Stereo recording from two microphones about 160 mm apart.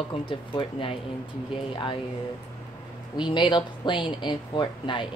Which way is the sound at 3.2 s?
30° left (ahead or behind).